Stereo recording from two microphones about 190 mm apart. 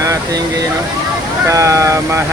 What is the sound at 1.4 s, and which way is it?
Speech, 15° right (ahead or behind).